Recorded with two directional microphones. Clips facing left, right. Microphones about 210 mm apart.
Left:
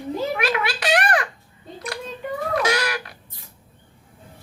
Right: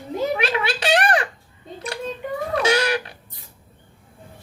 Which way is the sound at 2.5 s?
25° right (ahead or behind).